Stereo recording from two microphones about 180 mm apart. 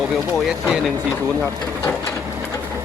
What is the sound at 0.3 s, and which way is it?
Speech, 5° right (ahead or behind).